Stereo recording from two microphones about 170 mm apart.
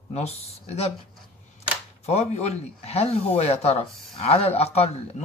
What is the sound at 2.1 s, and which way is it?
A woman's voice, 40° left (ahead or behind).